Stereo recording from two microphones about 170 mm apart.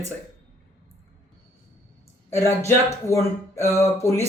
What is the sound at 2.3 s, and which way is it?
Speech, 15° left (ahead or behind).